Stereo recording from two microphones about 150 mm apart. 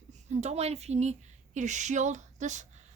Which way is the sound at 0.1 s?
50° right (ahead or behind).